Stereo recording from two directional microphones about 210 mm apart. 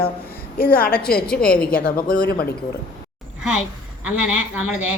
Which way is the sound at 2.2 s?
50° left (ahead or behind).